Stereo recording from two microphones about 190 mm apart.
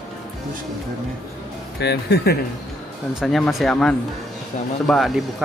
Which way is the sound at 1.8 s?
60° left (ahead or behind).